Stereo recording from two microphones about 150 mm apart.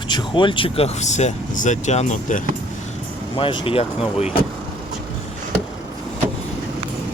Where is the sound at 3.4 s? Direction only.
35° left (ahead or behind).